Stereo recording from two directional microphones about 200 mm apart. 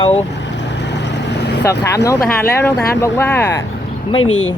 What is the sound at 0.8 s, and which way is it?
Vehicle, 60° left (ahead or behind).